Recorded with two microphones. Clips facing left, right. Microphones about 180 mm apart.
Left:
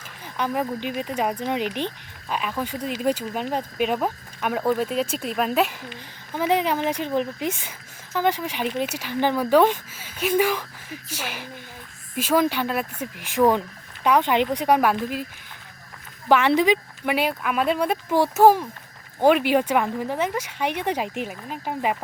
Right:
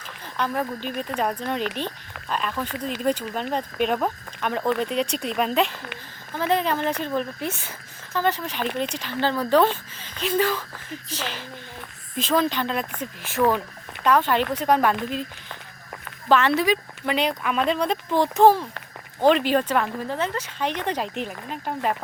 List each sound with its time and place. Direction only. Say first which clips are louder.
0.3 s speech: left 1 dB; 10° left (ahead or behind)
16.5 s speech: left 3 dB; 15° left (ahead or behind)